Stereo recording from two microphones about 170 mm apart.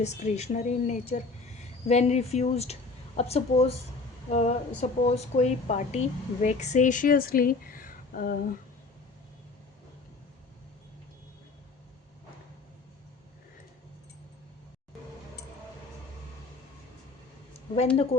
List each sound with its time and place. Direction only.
0.0 s a woman's voice: 45° left (ahead or behind)
17.9 s speech: 35° left (ahead or behind)